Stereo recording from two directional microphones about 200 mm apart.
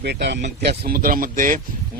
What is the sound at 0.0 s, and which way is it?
Speech, 60° right (ahead or behind).